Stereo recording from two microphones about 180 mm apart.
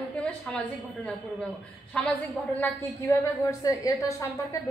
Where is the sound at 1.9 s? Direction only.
5° left (ahead or behind).